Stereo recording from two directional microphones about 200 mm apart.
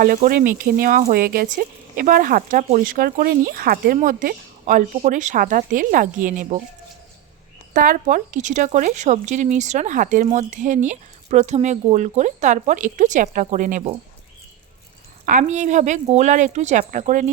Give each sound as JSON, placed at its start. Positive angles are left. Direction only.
{"t": 0.0, "sound": "speech", "side_deg": -45}
{"t": 7.7, "sound": "speech", "side_deg": -40}
{"t": 15.3, "sound": "speech", "side_deg": -40}